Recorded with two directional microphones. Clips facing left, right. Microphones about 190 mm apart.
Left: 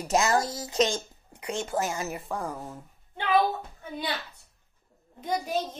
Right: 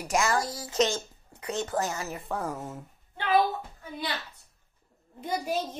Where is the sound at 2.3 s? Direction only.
5° right (ahead or behind).